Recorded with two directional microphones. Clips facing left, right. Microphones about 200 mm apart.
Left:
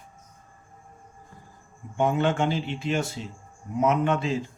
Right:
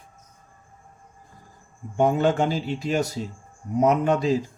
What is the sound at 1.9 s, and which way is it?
Speech, 40° right (ahead or behind).